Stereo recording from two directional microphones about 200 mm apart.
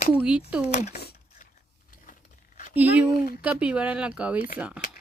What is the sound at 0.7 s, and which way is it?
Speech, 35° left (ahead or behind).